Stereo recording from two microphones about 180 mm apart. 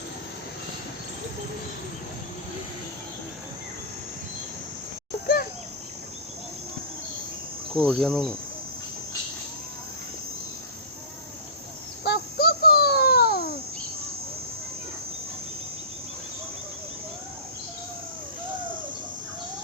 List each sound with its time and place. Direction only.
7.7 s cricket: 5° left (ahead or behind)
12.0 s child singing: 65° left (ahead or behind)